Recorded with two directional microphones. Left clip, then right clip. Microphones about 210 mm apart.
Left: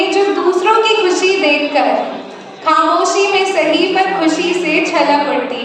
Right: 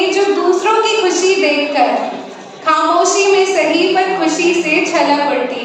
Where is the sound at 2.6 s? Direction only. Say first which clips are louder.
Even; 20° left (ahead or behind).